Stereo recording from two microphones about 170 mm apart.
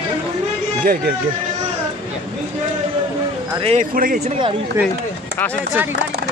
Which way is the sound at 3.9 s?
50° right (ahead or behind).